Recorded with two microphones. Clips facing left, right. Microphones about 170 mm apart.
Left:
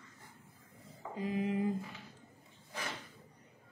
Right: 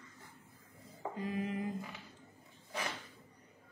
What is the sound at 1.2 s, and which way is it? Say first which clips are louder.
Speech: left 4 dB; 20° left (ahead or behind).